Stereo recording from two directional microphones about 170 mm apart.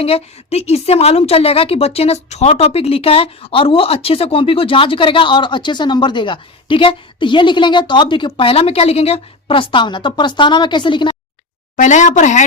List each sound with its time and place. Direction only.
0.0 s a woman's voice: 35° left (ahead or behind)
11.8 s speech: 45° left (ahead or behind)